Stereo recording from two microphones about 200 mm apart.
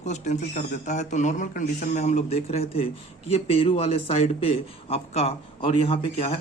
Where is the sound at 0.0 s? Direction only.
35° left (ahead or behind).